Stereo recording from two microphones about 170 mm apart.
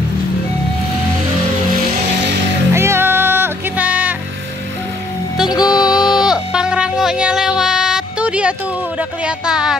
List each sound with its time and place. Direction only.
2.7 s music: 15° right (ahead or behind)
5.7 s music: 5° right (ahead or behind)
9.2 s speech: 5° right (ahead or behind)